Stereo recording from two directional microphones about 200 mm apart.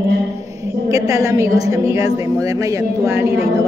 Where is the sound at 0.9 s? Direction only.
15° right (ahead or behind).